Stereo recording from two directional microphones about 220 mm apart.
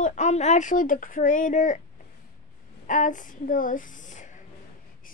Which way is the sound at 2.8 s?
35° left (ahead or behind).